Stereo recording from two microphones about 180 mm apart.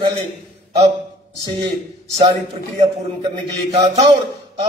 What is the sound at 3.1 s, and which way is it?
Mantra, 30° right (ahead or behind).